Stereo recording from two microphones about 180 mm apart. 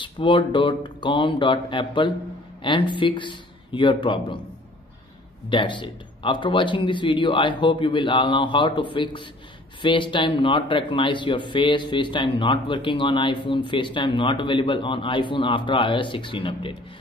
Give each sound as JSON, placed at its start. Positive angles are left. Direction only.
{"t": 0.0, "sound": "speech", "side_deg": 25}
{"t": 5.5, "sound": "speech", "side_deg": 25}